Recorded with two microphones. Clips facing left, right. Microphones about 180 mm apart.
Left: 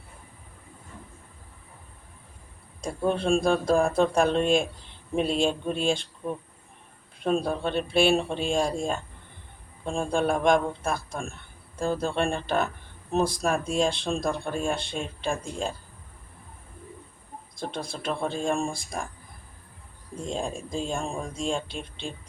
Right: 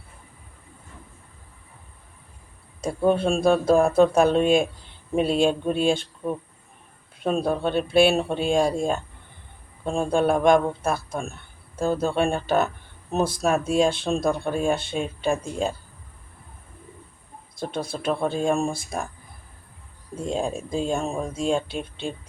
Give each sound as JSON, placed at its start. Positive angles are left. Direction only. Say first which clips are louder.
{"t": 3.2, "sound": "speech", "louder": "right 3 dB", "side_deg": 0}
{"t": 7.2, "sound": "speech", "louder": "right 2 dB", "side_deg": 0}
{"t": 17.6, "sound": "speech", "louder": "right 4 dB", "side_deg": 0}
{"t": 20.1, "sound": "speech", "louder": "right 5 dB", "side_deg": -5}